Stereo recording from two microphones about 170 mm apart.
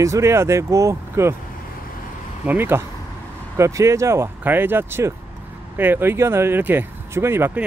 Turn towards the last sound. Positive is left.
turn(degrees=-15)  # may be behind; listen again after turning